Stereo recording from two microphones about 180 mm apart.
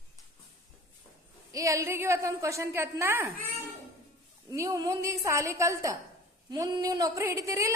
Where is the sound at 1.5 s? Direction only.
15° right (ahead or behind).